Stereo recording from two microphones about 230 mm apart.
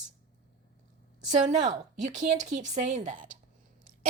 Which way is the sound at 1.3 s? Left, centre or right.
Right.